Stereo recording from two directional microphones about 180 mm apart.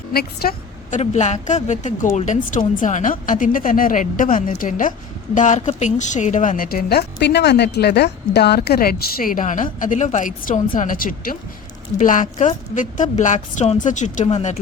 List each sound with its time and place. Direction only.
0.1 s a woman's voice: 60° left (ahead or behind); by 14.5 s 40° left (ahead or behind)